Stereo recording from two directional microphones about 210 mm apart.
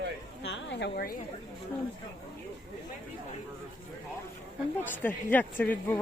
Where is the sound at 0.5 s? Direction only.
55° left (ahead or behind).